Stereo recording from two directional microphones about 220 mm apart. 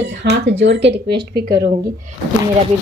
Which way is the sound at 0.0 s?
50° right (ahead or behind).